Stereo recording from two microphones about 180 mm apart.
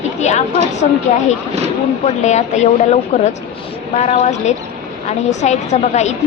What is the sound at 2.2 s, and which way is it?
A woman's voice, 40° left (ahead or behind).